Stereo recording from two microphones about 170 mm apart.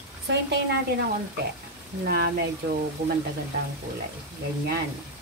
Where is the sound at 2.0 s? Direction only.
60° right (ahead or behind).